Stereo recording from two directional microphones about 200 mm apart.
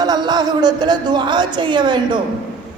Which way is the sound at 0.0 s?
20° right (ahead or behind).